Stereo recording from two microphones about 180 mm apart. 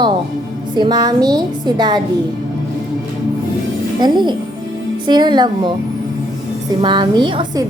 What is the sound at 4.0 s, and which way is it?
A woman's voice, 25° right (ahead or behind).